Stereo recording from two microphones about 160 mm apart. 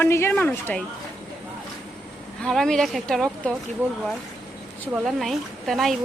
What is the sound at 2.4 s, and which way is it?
Speech, 5° left (ahead or behind).